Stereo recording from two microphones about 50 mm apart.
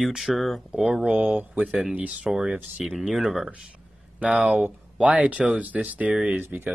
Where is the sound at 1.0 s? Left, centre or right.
Right.